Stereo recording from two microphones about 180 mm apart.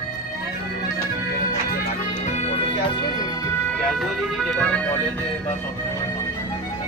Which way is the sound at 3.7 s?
Centre (ahead or behind).